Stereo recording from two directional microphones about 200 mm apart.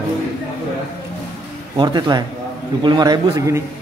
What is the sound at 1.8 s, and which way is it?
Speech, 20° right (ahead or behind).